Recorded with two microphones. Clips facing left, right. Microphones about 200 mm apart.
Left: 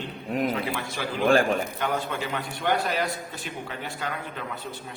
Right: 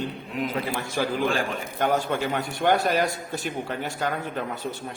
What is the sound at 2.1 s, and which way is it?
A man's voice, 45° right (ahead or behind).